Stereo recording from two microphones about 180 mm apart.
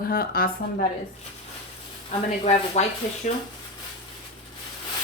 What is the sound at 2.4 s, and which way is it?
Speech, 40° left (ahead or behind).